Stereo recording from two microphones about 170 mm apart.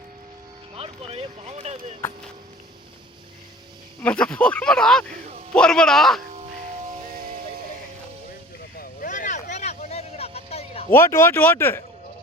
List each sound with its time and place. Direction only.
0.8 s speech: 35° right (ahead or behind)
4.0 s speech: 5° left (ahead or behind)
7.1 s music: 60° right (ahead or behind)
8.8 s vehicle: 50° left (ahead or behind)
10.9 s speech: 15° left (ahead or behind)